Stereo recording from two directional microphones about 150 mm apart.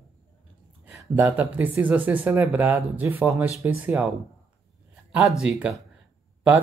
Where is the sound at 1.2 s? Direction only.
10° right (ahead or behind).